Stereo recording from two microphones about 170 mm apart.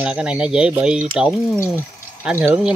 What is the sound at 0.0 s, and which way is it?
Speech, 5° right (ahead or behind).